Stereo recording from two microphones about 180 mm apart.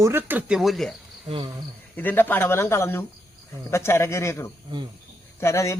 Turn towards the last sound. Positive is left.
turn(degrees=15)  # may be behind; listen again after turning